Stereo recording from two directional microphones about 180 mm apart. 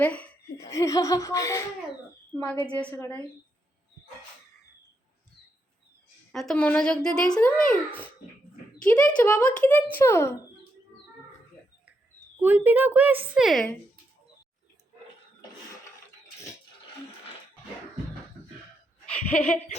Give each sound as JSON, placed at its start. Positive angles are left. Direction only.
{"t": 0.0, "sound": "speech", "side_deg": 10}
{"t": 6.3, "sound": "a child's voice", "side_deg": 0}
{"t": 12.4, "sound": "a woman's voice", "side_deg": -10}
{"t": 19.1, "sound": "speech", "side_deg": 10}